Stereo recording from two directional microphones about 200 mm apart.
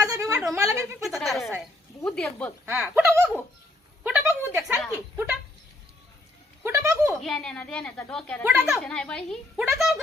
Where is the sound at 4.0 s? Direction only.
5° right (ahead or behind).